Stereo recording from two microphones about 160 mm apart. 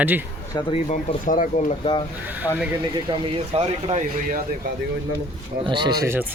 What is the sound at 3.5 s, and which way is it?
Speech, 40° right (ahead or behind).